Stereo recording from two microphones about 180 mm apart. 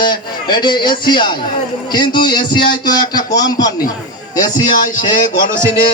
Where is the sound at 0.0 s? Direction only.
25° left (ahead or behind).